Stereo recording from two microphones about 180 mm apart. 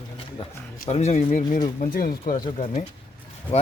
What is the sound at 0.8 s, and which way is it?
Speech, 35° left (ahead or behind).